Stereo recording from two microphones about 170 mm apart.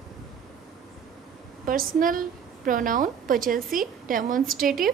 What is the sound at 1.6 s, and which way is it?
A woman's voice, 55° right (ahead or behind).